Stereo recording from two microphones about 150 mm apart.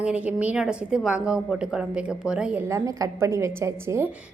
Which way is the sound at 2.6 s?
20° right (ahead or behind).